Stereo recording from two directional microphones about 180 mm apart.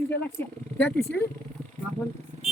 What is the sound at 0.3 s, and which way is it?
Speech, 10° left (ahead or behind).